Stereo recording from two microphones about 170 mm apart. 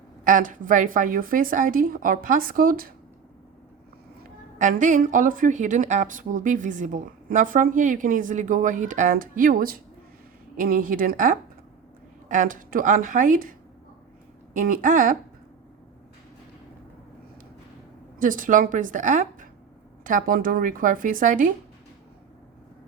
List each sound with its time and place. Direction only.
0.3 s speech: 50° right (ahead or behind)
4.5 s a woman's voice: 45° right (ahead or behind)
18.2 s speech: 50° right (ahead or behind)